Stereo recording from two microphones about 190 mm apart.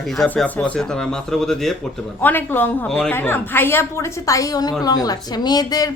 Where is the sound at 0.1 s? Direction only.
Centre (ahead or behind).